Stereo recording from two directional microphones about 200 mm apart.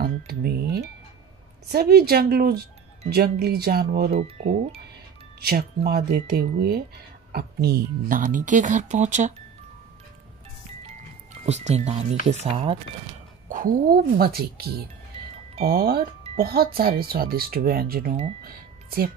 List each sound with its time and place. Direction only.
0.3 s speech: 50° right (ahead or behind)
4.1 s speech: 35° right (ahead or behind)
5.4 s speech: 50° right (ahead or behind)
11.4 s speech: 35° right (ahead or behind)
13.5 s speech: 45° right (ahead or behind)